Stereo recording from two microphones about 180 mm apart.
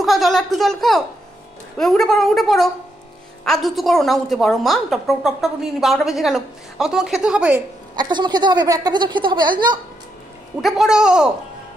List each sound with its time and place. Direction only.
0.0 s a woman's voice: centre (ahead or behind)
7.9 s a woman's voice: 25° right (ahead or behind)
10.6 s a woman's voice: centre (ahead or behind)